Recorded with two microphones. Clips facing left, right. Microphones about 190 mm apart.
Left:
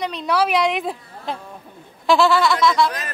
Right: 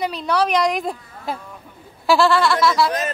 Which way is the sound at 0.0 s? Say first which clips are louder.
Even; centre (ahead or behind).